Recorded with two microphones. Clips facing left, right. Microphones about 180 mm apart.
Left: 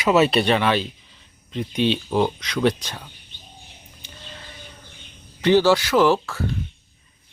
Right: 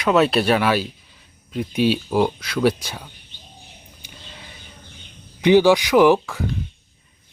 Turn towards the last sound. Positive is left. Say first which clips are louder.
# right 3 dB
turn(degrees=-15)  # may be behind; listen again after turning